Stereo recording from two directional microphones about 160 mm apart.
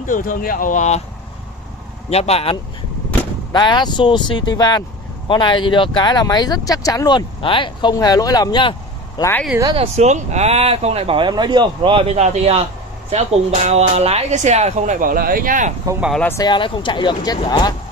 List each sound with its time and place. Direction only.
0.0 s speech: 55° left (ahead or behind)
2.0 s speech: 40° left (ahead or behind)
3.5 s speech: 30° left (ahead or behind)
9.8 s speech: 45° right (ahead or behind)
16.2 s speech: 15° left (ahead or behind)
16.4 s speech: 30° left (ahead or behind)